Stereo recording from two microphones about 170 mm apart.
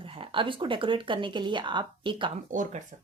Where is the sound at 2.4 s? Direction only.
50° right (ahead or behind).